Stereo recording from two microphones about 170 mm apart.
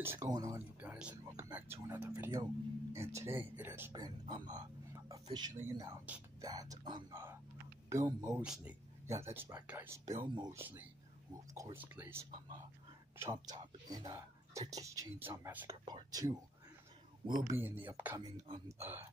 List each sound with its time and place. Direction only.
0.0 s speech: 15° right (ahead or behind)
0.7 s speech: 5° right (ahead or behind)
8.4 s speech: 10° right (ahead or behind)
10.2 s speech: 25° right (ahead or behind)
10.5 s speech: 10° right (ahead or behind)
15.8 s speech: 25° right (ahead or behind)
17.6 s speech: 10° right (ahead or behind)